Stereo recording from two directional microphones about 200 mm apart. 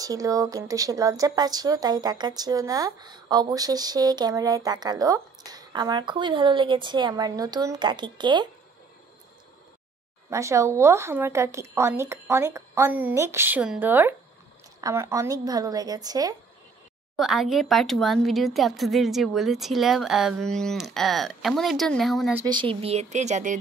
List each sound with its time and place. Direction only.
0.0 s a woman's voice: 15° right (ahead or behind)
10.3 s a woman's voice: 15° right (ahead or behind)
17.2 s speech: centre (ahead or behind)
22.5 s speech: 25° right (ahead or behind)